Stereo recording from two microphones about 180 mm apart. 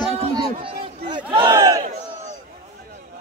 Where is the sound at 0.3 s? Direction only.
25° right (ahead or behind).